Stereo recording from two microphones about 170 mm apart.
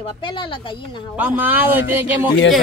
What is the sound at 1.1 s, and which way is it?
Speech, 10° right (ahead or behind).